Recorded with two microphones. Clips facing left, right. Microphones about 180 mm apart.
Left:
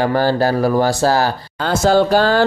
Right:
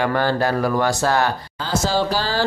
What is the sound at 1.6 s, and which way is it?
Speech, 55° left (ahead or behind).